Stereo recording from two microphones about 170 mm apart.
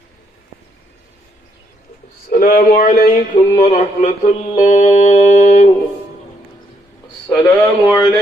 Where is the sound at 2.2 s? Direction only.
55° left (ahead or behind).